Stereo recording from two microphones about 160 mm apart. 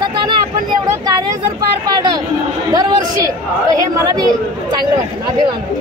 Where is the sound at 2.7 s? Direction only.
25° right (ahead or behind).